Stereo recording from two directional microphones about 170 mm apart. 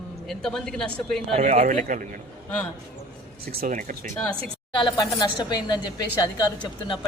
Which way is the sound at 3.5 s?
55° right (ahead or behind).